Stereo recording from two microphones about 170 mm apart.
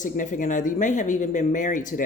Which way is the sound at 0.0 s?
50° left (ahead or behind).